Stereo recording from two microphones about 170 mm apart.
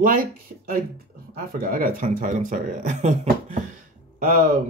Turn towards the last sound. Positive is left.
turn(degrees=-55)  # may be behind; listen again after turning